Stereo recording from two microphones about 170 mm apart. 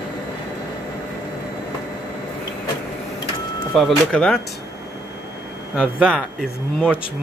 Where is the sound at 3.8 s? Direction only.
5° left (ahead or behind).